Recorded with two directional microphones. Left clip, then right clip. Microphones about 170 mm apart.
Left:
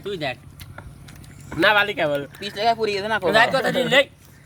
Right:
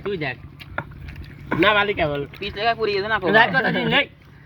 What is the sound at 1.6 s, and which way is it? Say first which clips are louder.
Speech: left 1 dB; 25° left (ahead or behind).